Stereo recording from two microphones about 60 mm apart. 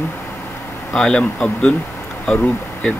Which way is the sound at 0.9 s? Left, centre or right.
Centre.